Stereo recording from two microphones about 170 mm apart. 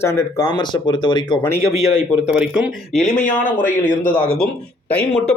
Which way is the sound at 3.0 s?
45° left (ahead or behind).